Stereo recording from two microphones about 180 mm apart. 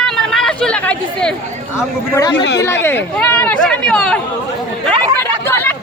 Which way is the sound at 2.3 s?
75° left (ahead or behind).